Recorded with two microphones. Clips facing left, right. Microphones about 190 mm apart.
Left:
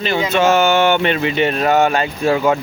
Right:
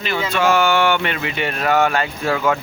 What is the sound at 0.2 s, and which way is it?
Speech, 20° left (ahead or behind).